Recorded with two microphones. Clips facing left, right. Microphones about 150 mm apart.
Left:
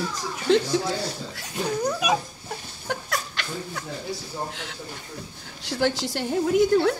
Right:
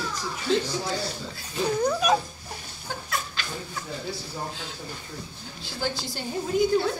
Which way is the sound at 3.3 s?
60° left (ahead or behind).